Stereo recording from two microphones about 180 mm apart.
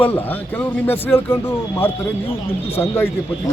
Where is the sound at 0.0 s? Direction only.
10° left (ahead or behind).